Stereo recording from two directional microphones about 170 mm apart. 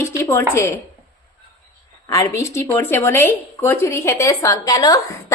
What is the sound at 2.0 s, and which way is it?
A woman's voice, 20° left (ahead or behind).